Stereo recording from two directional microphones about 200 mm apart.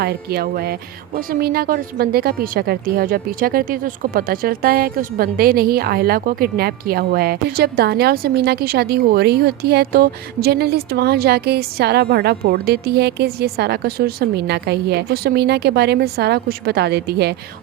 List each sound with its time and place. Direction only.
0.0 s speech: 50° right (ahead or behind)